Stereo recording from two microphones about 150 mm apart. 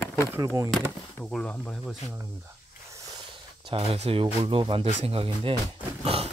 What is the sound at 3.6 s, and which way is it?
Speech, 40° right (ahead or behind).